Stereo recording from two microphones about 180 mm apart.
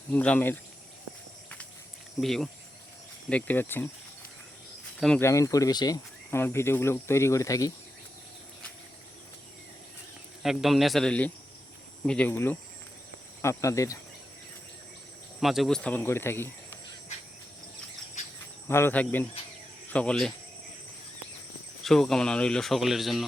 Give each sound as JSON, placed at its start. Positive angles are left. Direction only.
{"t": 0.1, "sound": "speech", "side_deg": 10}
{"t": 2.2, "sound": "speech", "side_deg": 0}
{"t": 4.9, "sound": "speech", "side_deg": 0}
{"t": 5.2, "sound": "speech", "side_deg": 15}
{"t": 10.4, "sound": "speech", "side_deg": 0}
{"t": 15.4, "sound": "speech", "side_deg": 0}
{"t": 18.7, "sound": "speech", "side_deg": 10}
{"t": 21.8, "sound": "speech", "side_deg": 5}